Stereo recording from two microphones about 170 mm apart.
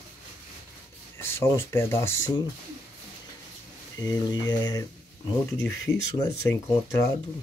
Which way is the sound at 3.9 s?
25° left (ahead or behind).